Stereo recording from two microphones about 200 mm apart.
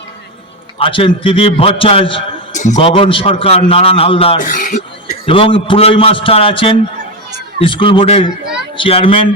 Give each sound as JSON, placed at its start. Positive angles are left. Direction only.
{"t": 0.8, "sound": "a man's voice", "side_deg": 25}
{"t": 4.4, "sound": "speech", "side_deg": 40}
{"t": 5.2, "sound": "a man's voice", "side_deg": 25}